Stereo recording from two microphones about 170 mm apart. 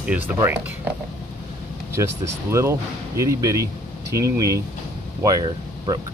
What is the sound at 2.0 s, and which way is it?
Speech, 15° right (ahead or behind).